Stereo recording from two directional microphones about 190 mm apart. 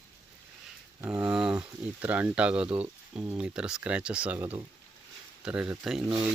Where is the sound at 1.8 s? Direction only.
10° right (ahead or behind).